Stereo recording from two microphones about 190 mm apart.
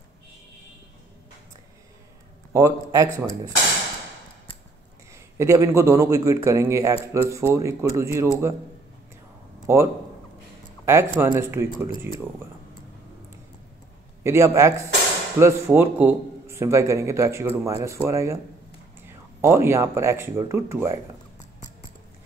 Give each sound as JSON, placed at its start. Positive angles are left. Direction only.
{"t": 2.5, "sound": "a man's voice", "side_deg": -15}
{"t": 5.1, "sound": "a man's voice", "side_deg": -15}
{"t": 9.7, "sound": "a man's voice", "side_deg": -15}
{"t": 10.9, "sound": "a man's voice", "side_deg": -15}
{"t": 14.2, "sound": "a man's voice", "side_deg": -15}